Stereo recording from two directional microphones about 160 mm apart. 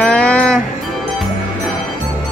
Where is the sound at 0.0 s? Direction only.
10° left (ahead or behind).